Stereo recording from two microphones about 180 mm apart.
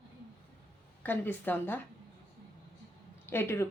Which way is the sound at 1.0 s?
10° left (ahead or behind).